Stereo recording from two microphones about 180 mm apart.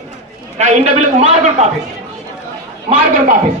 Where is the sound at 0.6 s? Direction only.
40° right (ahead or behind).